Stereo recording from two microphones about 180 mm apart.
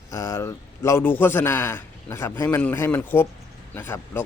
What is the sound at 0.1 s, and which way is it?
A man's voice, 15° left (ahead or behind).